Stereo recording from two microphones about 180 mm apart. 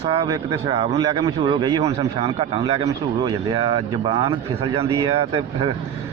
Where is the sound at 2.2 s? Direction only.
30° right (ahead or behind).